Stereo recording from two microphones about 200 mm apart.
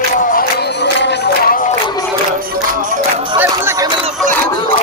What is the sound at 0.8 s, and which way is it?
Music, 60° left (ahead or behind).